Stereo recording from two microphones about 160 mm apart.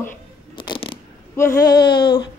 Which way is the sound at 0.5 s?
30° left (ahead or behind).